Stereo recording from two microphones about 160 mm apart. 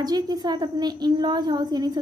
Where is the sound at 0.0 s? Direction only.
25° right (ahead or behind).